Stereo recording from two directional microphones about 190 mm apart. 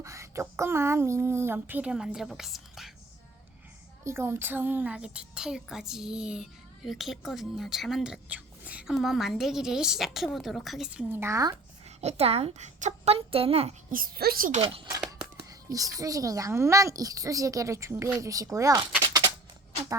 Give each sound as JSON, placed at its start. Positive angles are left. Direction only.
{"t": 0.0, "sound": "speech", "side_deg": -15}
{"t": 4.0, "sound": "a child's voice", "side_deg": -15}
{"t": 11.9, "sound": "a woman's voice", "side_deg": -35}
{"t": 13.9, "sound": "a woman's voice", "side_deg": -50}
{"t": 14.6, "sound": "speech", "side_deg": -30}
{"t": 15.4, "sound": "speech", "side_deg": -20}